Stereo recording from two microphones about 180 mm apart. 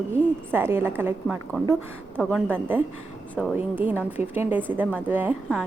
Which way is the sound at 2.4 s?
10° right (ahead or behind).